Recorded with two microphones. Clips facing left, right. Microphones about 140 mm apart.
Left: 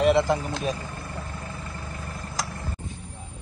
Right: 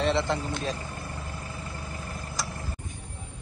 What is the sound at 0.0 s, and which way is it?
Speech, 20° left (ahead or behind).